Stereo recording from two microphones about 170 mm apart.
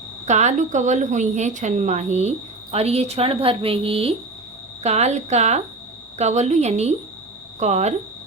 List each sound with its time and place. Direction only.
0.3 s a woman's voice: 45° right (ahead or behind)